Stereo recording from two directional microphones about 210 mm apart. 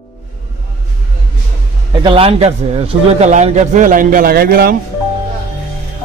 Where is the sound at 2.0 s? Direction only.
25° right (ahead or behind); by 4.7 s 45° right (ahead or behind).